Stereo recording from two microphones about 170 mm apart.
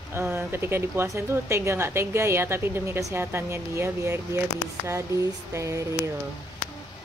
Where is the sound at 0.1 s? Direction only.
15° right (ahead or behind).